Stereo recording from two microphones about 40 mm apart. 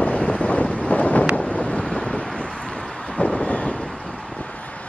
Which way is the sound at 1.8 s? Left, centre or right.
Centre.